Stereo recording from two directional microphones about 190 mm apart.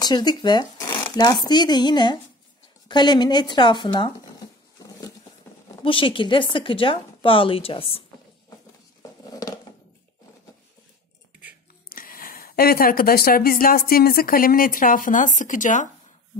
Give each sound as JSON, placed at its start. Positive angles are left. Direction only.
{"t": 0.0, "sound": "a woman's voice", "side_deg": 20}
{"t": 2.9, "sound": "a sound", "side_deg": 25}
{"t": 5.8, "sound": "a woman's voice", "side_deg": 25}
{"t": 11.9, "sound": "speech", "side_deg": 50}